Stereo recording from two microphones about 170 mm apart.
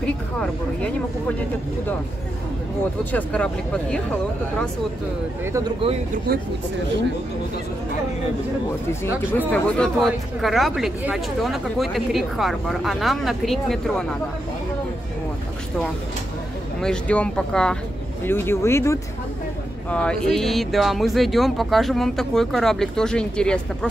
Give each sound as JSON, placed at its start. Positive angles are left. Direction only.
{"t": 0.0, "sound": "a woman's voice", "side_deg": 5}
{"t": 3.1, "sound": "speech", "side_deg": 10}
{"t": 6.1, "sound": "speech", "side_deg": -65}
{"t": 9.5, "sound": "speech", "side_deg": 5}
{"t": 16.8, "sound": "speech", "side_deg": 5}